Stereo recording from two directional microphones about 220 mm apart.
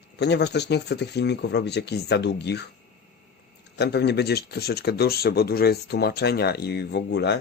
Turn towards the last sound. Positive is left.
turn(degrees=50)  # may be behind; listen again after turning